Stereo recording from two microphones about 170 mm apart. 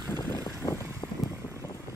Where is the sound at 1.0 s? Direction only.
20° left (ahead or behind).